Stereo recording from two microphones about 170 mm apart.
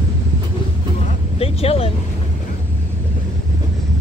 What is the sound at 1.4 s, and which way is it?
Vehicle, 35° left (ahead or behind).